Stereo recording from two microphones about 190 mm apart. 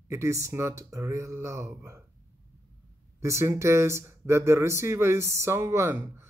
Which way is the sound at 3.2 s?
15° right (ahead or behind).